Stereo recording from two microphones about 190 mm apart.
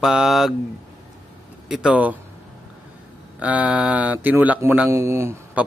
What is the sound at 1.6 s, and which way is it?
Speech, 5° right (ahead or behind).